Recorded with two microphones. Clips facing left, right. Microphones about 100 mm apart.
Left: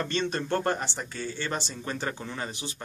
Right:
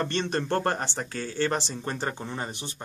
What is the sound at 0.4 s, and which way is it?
Speech, 45° right (ahead or behind).